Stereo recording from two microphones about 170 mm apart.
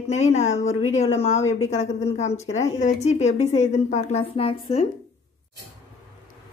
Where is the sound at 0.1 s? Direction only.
40° left (ahead or behind).